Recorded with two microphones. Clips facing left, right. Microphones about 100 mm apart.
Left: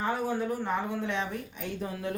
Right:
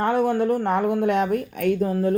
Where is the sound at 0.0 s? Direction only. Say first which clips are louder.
Right 9 dB; 60° right (ahead or behind).